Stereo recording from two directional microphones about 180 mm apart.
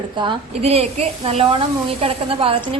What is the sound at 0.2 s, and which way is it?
A woman's voice, 30° right (ahead or behind).